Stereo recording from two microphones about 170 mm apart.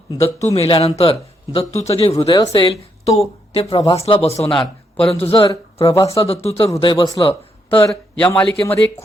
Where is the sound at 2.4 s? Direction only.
30° left (ahead or behind).